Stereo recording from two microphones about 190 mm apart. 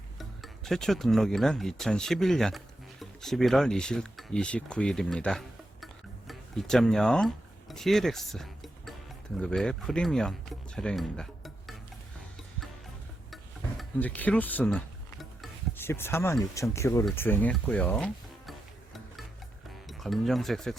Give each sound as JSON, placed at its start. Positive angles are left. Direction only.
{"t": 0.2, "sound": "speech", "side_deg": 0}
{"t": 5.8, "sound": "a sound", "side_deg": 0}
{"t": 9.4, "sound": "speech", "side_deg": 5}
{"t": 13.3, "sound": "a sound", "side_deg": 5}
{"t": 15.8, "sound": "speech", "side_deg": 10}
{"t": 19.9, "sound": "speech", "side_deg": 0}